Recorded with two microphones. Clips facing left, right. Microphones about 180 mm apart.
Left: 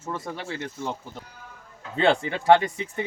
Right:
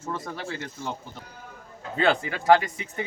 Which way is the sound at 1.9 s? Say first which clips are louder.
Left 2 dB; 25° left (ahead or behind).